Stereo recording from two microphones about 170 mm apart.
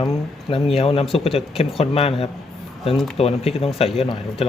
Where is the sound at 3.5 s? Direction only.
35° left (ahead or behind).